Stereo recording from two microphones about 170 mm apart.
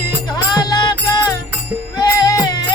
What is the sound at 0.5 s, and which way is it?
Music, 25° left (ahead or behind).